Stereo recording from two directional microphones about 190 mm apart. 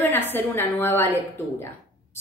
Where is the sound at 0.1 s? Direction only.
10° left (ahead or behind).